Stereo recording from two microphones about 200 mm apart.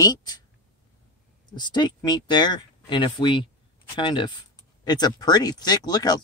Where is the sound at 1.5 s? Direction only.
20° left (ahead or behind).